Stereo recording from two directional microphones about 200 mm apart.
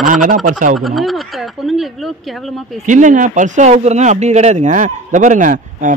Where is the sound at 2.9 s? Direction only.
40° right (ahead or behind).